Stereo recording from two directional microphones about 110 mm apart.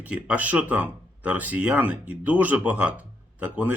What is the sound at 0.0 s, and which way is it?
Speech, 15° right (ahead or behind).